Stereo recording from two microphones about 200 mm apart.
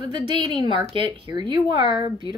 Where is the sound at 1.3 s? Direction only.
20° right (ahead or behind).